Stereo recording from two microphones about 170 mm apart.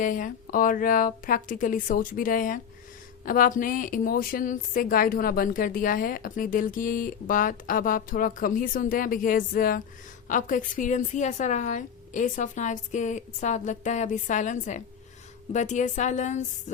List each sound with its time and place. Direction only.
0.0 s a woman's voice: 50° left (ahead or behind)